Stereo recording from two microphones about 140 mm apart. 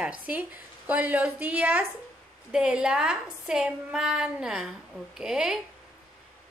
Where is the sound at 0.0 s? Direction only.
10° right (ahead or behind).